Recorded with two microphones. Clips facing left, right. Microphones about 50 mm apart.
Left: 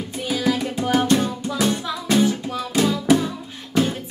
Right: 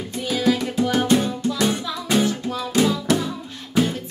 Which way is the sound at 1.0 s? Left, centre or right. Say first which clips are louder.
Right 1 dB; centre.